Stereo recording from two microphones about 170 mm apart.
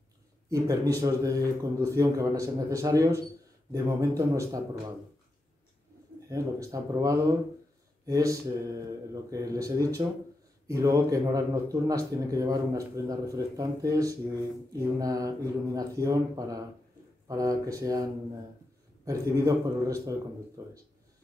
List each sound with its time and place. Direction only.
0.5 s speech: 20° right (ahead or behind)
6.2 s speech: 20° right (ahead or behind)
19.0 s speech: 20° right (ahead or behind)